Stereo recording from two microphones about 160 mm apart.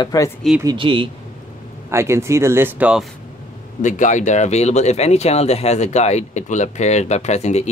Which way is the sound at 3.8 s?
50° left (ahead or behind).